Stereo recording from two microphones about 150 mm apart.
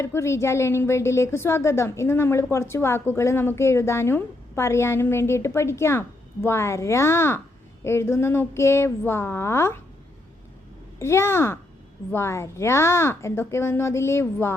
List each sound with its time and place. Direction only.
0.0 s a woman's voice: 20° left (ahead or behind)
11.0 s a woman's voice: 15° left (ahead or behind)